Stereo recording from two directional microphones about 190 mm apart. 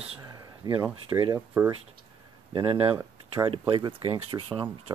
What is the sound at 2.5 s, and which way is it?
Speech, 25° right (ahead or behind).